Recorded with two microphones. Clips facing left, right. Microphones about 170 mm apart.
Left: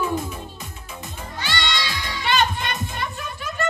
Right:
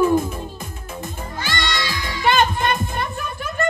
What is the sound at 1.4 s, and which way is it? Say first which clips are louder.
Music: right 1 dB; 50° right (ahead or behind).